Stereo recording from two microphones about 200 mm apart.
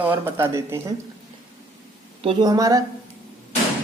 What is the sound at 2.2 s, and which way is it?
Speech, 25° right (ahead or behind).